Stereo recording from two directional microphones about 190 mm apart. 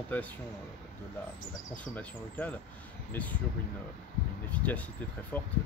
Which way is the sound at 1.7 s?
5° left (ahead or behind).